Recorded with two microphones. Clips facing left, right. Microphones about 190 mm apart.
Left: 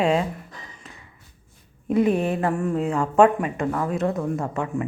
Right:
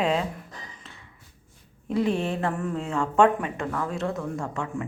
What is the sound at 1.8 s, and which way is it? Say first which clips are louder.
A woman's voice: left 5 dB; 20° left (ahead or behind).